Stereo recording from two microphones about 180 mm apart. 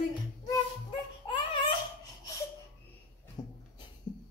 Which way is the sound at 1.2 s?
30° left (ahead or behind).